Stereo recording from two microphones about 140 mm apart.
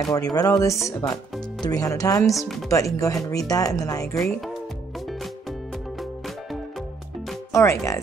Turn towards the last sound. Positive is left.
turn(degrees=20)  # may be behind; listen again after turning